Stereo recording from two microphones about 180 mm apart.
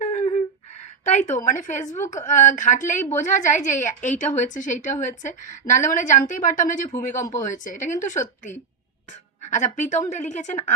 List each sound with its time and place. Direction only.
0.0 s a sound: 40° left (ahead or behind)
1.5 s a woman's voice: 45° left (ahead or behind)
9.5 s a woman's voice: 45° left (ahead or behind)